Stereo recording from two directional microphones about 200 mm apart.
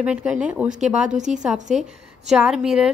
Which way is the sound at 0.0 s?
5° right (ahead or behind).